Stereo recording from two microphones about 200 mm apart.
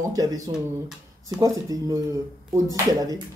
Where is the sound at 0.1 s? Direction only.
15° right (ahead or behind).